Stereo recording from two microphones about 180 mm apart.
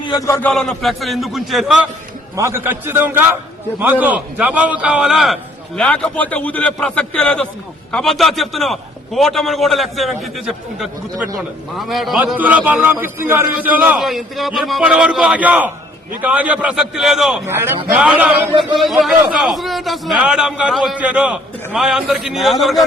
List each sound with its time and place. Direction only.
0.0 s a man's voice: 20° left (ahead or behind)
0.4 s a man's voice: 5° left (ahead or behind)
2.3 s a man's voice: 15° right (ahead or behind)
17.4 s a man's voice: 15° right (ahead or behind)